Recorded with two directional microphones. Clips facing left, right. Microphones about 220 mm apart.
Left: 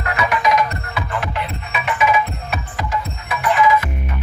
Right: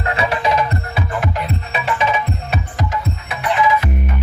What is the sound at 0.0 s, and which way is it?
Music, 30° right (ahead or behind).